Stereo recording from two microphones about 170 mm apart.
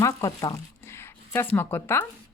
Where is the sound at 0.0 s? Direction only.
20° left (ahead or behind).